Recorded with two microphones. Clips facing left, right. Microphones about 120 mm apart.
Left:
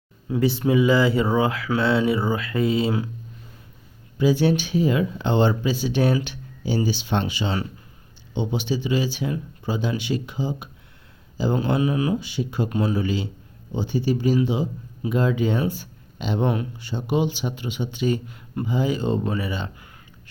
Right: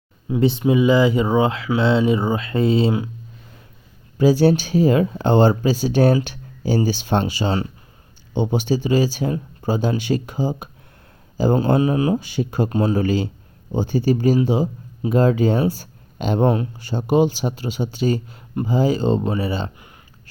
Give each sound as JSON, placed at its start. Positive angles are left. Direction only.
{"t": 0.3, "sound": "speech", "side_deg": -20}
{"t": 4.2, "sound": "speech", "side_deg": -40}